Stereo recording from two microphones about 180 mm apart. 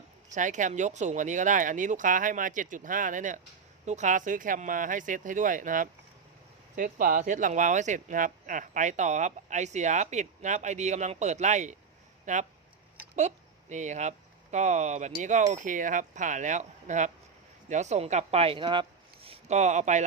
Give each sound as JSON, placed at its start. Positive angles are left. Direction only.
{"t": 0.3, "sound": "speech", "side_deg": -45}